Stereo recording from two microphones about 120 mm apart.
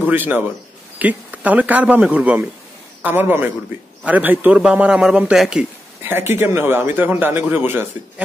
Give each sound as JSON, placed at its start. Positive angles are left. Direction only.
{"t": 0.0, "sound": "a man's voice", "side_deg": -15}
{"t": 6.3, "sound": "a man's voice", "side_deg": -20}